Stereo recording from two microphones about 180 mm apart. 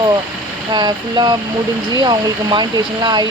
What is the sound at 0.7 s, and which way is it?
Speech, 25° right (ahead or behind).